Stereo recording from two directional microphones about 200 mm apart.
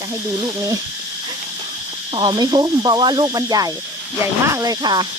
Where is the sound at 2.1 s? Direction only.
20° right (ahead or behind).